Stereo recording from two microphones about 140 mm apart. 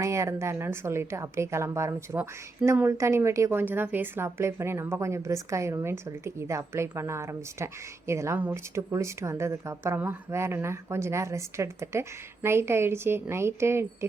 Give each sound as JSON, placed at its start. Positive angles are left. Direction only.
{"t": 0.0, "sound": "a woman's voice", "side_deg": -20}